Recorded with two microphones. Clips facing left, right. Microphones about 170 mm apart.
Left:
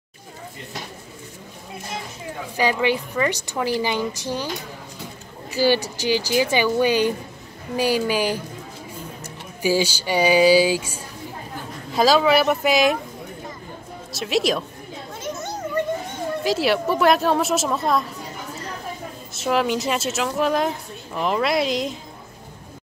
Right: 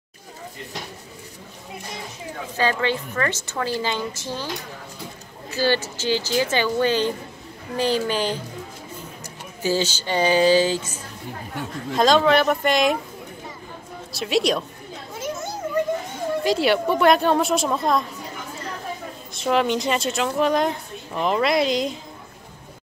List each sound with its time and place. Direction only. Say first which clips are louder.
2.5 s a woman's voice: left 2 dB; 15° left (ahead or behind)
5.5 s a woman's voice: left 3 dB; 15° left (ahead or behind)
9.6 s a woman's voice: left 2 dB; 10° left (ahead or behind)
14.1 s a woman's voice: even; centre (ahead or behind)
16.4 s a woman's voice: even; centre (ahead or behind)
19.3 s a woman's voice: right 1 dB; 5° left (ahead or behind)